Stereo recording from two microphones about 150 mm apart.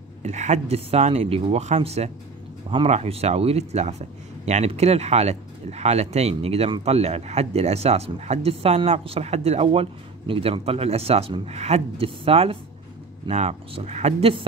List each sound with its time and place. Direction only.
0.2 s speech: 50° right (ahead or behind)